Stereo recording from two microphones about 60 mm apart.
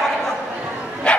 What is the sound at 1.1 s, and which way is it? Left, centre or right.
Dog, centre.